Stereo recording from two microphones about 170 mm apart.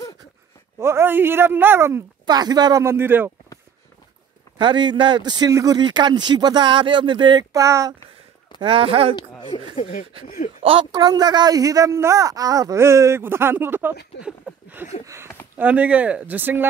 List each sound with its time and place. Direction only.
0.7 s speech: 15° right (ahead or behind)
4.6 s speech: 25° right (ahead or behind)
8.5 s speech: 30° right (ahead or behind)
9.5 s speech: 40° left (ahead or behind)
10.6 s speech: 30° right (ahead or behind); by 16.6 s 10° right (ahead or behind)